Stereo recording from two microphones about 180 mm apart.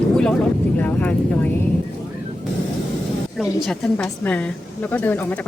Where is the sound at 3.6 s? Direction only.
5° left (ahead or behind).